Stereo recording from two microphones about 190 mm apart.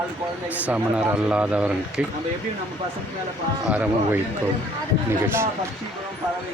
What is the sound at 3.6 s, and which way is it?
Speech, 10° right (ahead or behind).